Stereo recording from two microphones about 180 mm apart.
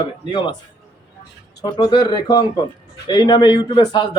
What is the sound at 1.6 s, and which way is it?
A man's voice, 25° left (ahead or behind).